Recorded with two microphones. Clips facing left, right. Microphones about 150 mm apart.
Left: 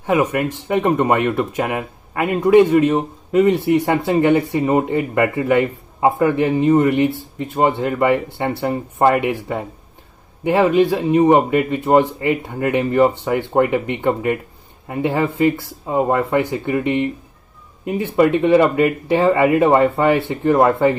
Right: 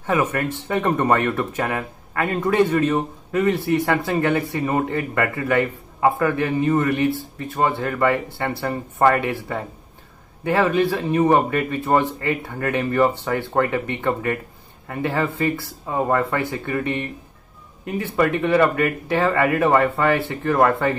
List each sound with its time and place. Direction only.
0.0 s speech: 15° left (ahead or behind)